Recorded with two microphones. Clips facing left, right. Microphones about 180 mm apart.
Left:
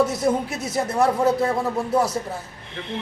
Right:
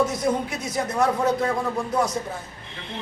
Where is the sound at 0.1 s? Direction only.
25° left (ahead or behind).